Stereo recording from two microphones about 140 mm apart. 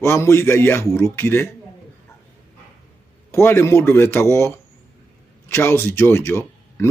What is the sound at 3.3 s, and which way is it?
A man's voice, 20° left (ahead or behind).